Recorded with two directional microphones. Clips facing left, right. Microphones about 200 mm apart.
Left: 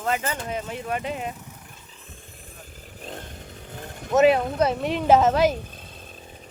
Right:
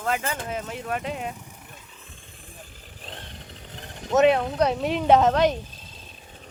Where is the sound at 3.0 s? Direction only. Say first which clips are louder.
Left 5 dB; 45° left (ahead or behind).